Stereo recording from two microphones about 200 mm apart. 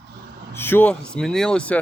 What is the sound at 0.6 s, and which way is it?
Speech, 10° left (ahead or behind).